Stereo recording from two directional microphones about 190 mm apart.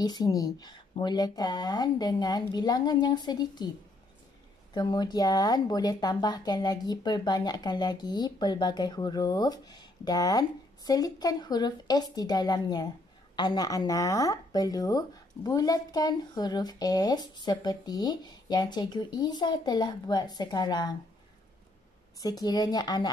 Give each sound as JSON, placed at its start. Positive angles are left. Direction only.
{"t": 0.0, "sound": "speech", "side_deg": 20}
{"t": 4.7, "sound": "speech", "side_deg": 20}
{"t": 22.2, "sound": "speech", "side_deg": 20}